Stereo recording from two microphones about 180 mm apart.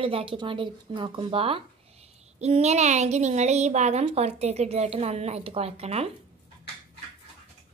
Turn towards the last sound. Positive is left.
turn(degrees=-35)  # may be behind; listen again after turning